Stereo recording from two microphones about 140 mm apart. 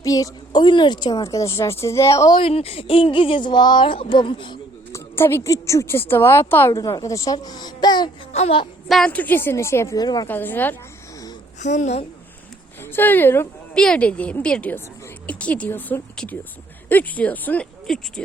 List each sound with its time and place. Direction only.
0.0 s a woman's voice: 25° left (ahead or behind)
2.3 s speech: 40° left (ahead or behind)
4.9 s a woman's voice: 20° left (ahead or behind)
8.3 s speech: 45° left (ahead or behind)
8.9 s a woman's voice: 5° left (ahead or behind); by 10.2 s 30° left (ahead or behind)
10.2 s a woman's voice: 15° left (ahead or behind)
11.6 s a woman's voice: 55° left (ahead or behind)
12.8 s speech: 15° left (ahead or behind)
13.7 s a woman's voice: 5° left (ahead or behind)